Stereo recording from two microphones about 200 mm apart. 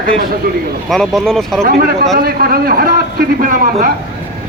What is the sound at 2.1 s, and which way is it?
A man's voice, 45° right (ahead or behind).